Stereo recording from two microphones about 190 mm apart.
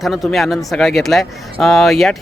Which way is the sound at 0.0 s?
Centre (ahead or behind).